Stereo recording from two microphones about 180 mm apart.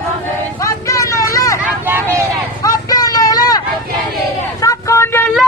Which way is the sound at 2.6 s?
20° left (ahead or behind).